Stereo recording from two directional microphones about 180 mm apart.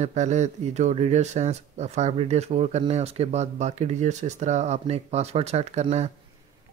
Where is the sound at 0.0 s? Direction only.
40° right (ahead or behind).